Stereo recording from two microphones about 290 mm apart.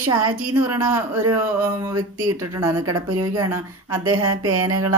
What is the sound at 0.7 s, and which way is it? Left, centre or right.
Speech, centre.